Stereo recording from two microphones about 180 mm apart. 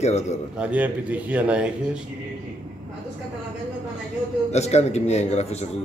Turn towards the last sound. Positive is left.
turn(degrees=40)  # may be behind; listen again after turning